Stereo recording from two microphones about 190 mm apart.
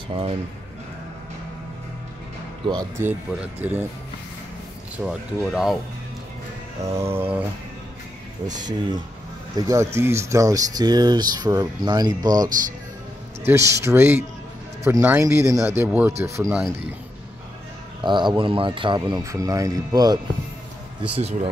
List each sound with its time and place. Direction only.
2.6 s speech: 25° right (ahead or behind)
3.0 s speech: 5° right (ahead or behind)
5.0 s speech: centre (ahead or behind)
6.8 s speech: 15° right (ahead or behind)
8.5 s speech: 20° right (ahead or behind)
13.5 s speech: 15° right (ahead or behind)
18.0 s speech: 25° right (ahead or behind)
21.0 s speech: 30° right (ahead or behind)